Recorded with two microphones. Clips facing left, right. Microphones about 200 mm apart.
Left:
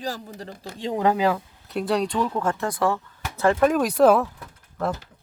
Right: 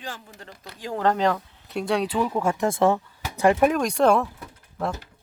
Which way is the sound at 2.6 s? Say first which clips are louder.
Right 3 dB; 25° right (ahead or behind).